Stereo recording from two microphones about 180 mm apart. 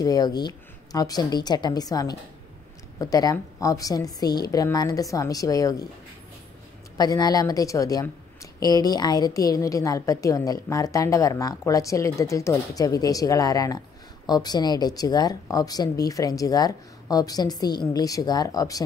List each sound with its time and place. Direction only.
0.0 s a woman's voice: 20° left (ahead or behind)
7.0 s a woman's voice: 20° left (ahead or behind)